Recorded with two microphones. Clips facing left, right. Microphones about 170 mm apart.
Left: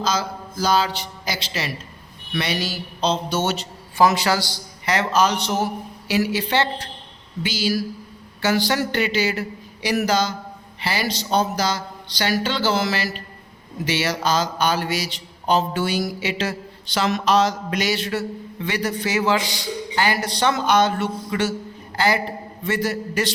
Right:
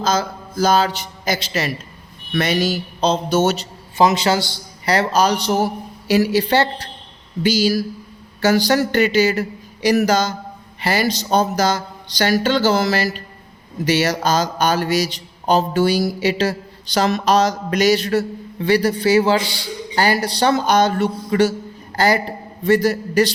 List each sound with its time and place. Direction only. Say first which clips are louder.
0.0 s speech: right 4 dB; 50° right (ahead or behind)
3.9 s a man's voice: right 2 dB; 20° right (ahead or behind); by 23.3 s 35° right (ahead or behind)